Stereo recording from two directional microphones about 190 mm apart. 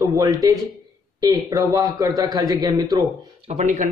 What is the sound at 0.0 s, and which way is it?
A man's voice, 20° right (ahead or behind).